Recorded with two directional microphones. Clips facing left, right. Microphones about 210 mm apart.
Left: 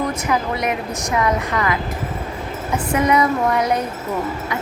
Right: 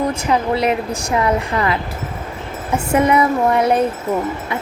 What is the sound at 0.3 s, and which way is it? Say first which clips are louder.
Speech: right 6 dB; 30° right (ahead or behind).